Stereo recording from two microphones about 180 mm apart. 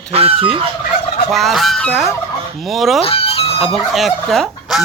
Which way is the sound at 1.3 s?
Centre (ahead or behind).